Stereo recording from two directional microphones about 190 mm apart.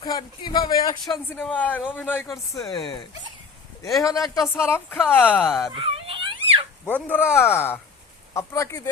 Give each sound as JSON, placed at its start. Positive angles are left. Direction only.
{"t": 0.0, "sound": "speech", "side_deg": 25}
{"t": 1.3, "sound": "speech", "side_deg": 5}
{"t": 2.6, "sound": "speech", "side_deg": 25}
{"t": 5.7, "sound": "a sound", "side_deg": -30}
{"t": 6.8, "sound": "speech", "side_deg": 10}